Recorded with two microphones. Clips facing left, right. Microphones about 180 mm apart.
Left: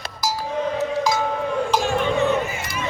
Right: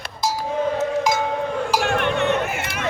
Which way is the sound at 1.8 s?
65° right (ahead or behind).